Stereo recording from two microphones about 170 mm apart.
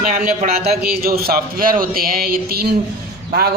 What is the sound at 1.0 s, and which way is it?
A man's voice, 60° right (ahead or behind).